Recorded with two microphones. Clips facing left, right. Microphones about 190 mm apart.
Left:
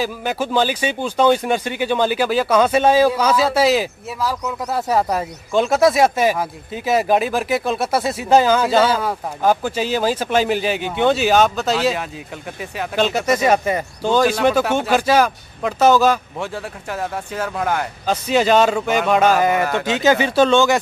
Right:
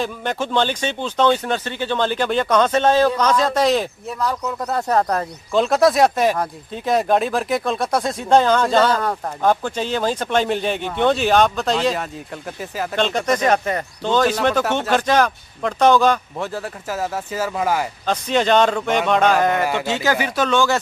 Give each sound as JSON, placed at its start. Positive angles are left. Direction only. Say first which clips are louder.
{"t": 0.0, "sound": "speech", "louder": "left 1 dB", "side_deg": 5}
{"t": 18.0, "sound": "a man's voice", "louder": "left 3 dB", "side_deg": 5}
{"t": 19.6, "sound": "speech", "louder": "left 1 dB", "side_deg": -10}
{"t": 19.9, "sound": "speech", "louder": "left 4 dB", "side_deg": 20}